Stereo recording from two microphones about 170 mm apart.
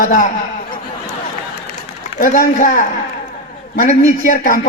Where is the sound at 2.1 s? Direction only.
55° left (ahead or behind).